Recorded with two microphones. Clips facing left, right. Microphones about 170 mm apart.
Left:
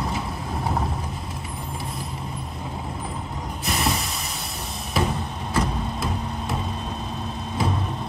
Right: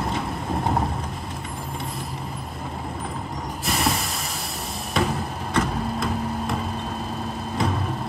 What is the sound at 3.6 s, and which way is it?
Hiss, centre (ahead or behind).